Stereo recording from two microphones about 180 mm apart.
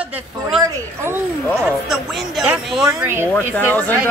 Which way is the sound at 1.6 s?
5° right (ahead or behind).